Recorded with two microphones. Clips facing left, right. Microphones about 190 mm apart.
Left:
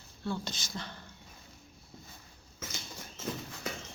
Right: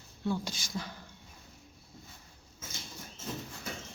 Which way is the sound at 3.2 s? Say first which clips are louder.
Left 3 dB; 85° left.